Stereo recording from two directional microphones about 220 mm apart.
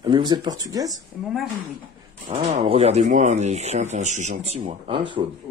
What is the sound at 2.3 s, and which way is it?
Speech, 25° right (ahead or behind).